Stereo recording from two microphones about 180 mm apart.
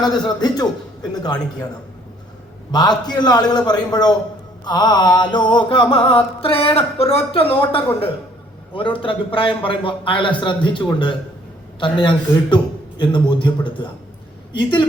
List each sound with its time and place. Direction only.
0.0 s mantra: 25° left (ahead or behind)
2.7 s mantra: 20° left (ahead or behind)